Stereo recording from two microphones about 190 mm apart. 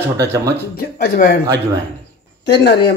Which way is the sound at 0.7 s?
50° left (ahead or behind).